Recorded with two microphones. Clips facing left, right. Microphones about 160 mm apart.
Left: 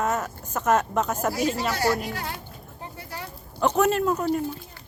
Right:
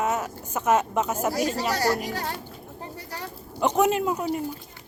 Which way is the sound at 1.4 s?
40° right (ahead or behind).